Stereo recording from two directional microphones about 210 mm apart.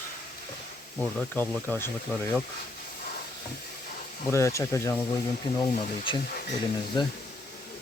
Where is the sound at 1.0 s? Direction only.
10° left (ahead or behind).